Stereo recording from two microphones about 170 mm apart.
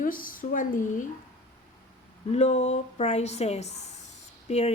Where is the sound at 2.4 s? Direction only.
40° left (ahead or behind).